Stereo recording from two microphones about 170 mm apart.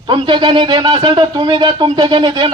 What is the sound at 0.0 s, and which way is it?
A man's voice, 30° right (ahead or behind).